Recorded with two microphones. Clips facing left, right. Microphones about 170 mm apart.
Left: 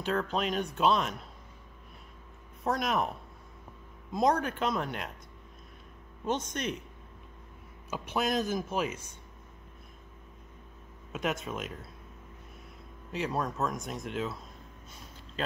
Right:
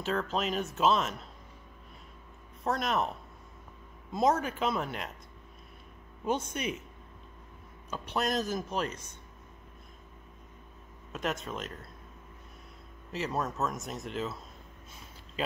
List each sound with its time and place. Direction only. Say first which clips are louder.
0.0 s speech: left 1 dB; centre (ahead or behind)
2.6 s speech: left 1 dB; centre (ahead or behind)
4.1 s speech: even; 5° right (ahead or behind)
6.2 s a man's voice: even; 10° right (ahead or behind)
7.9 s speech: left 1 dB; 5° left (ahead or behind)
11.1 s speech: left 1 dB; centre (ahead or behind)
13.1 s speech: left 1 dB; centre (ahead or behind)